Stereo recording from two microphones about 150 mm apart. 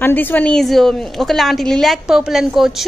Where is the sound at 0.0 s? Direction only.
15° left (ahead or behind).